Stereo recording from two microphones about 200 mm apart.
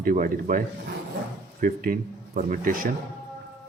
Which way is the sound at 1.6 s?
45° right (ahead or behind).